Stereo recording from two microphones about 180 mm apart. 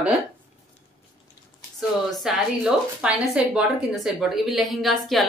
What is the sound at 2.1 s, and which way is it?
A woman's voice, centre (ahead or behind).